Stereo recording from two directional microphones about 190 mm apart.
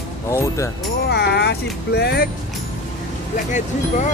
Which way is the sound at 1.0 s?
60° left (ahead or behind).